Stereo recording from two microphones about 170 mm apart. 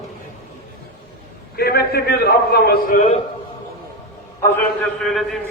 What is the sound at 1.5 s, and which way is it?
A man's voice, 65° left (ahead or behind).